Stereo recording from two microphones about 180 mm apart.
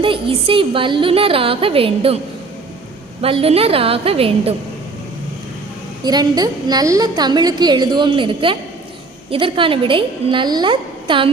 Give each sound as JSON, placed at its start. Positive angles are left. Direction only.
{"t": 0.0, "sound": "a woman's voice", "side_deg": -30}
{"t": 3.2, "sound": "a woman's voice", "side_deg": -30}
{"t": 6.0, "sound": "a woman's voice", "side_deg": -20}